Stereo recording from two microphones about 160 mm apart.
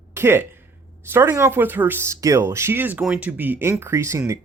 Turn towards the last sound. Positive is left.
turn(degrees=-20)  # may be behind; listen again after turning